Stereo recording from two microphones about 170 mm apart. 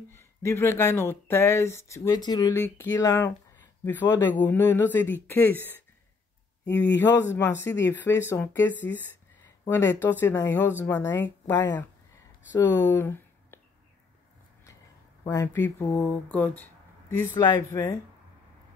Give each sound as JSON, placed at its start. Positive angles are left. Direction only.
{"t": 0.1, "sound": "speech", "side_deg": 15}
{"t": 15.2, "sound": "speech", "side_deg": 15}